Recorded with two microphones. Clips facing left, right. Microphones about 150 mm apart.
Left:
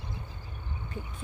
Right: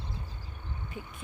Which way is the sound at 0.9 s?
15° right (ahead or behind).